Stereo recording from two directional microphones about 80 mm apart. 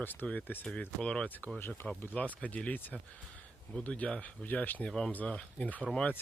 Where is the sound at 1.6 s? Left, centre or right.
Left.